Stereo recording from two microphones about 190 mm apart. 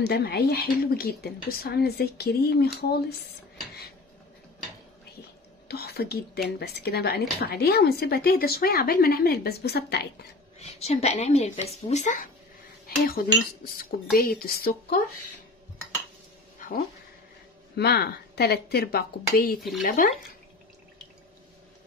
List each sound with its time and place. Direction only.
0.0 s speech: 55° left (ahead or behind)
5.7 s speech: 55° left (ahead or behind)
10.6 s speech: 35° left (ahead or behind)
12.8 s speech: 50° left (ahead or behind)
16.5 s a sound: 45° left (ahead or behind)
17.7 s speech: 55° left (ahead or behind)